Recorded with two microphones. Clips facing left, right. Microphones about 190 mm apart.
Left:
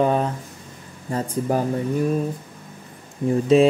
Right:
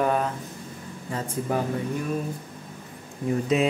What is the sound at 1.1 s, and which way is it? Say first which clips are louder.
Speech: left 5 dB; 40° left (ahead or behind).